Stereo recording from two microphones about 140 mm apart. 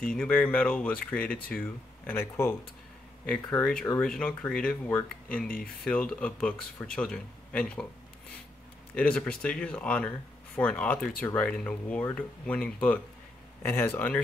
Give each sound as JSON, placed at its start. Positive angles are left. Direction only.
{"t": 0.0, "sound": "speech", "side_deg": 5}
{"t": 8.9, "sound": "speech", "side_deg": 10}